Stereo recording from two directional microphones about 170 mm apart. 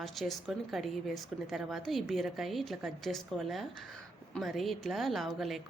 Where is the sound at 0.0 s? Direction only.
Centre (ahead or behind).